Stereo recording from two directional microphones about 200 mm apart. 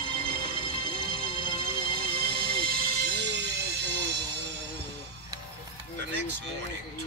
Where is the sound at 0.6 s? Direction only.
25° right (ahead or behind).